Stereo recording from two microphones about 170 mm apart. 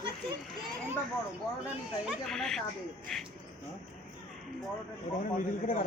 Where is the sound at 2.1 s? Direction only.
5° left (ahead or behind).